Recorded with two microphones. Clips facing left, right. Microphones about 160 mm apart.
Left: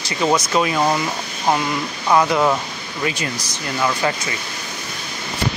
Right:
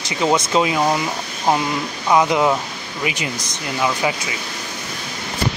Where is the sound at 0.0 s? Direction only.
20° right (ahead or behind).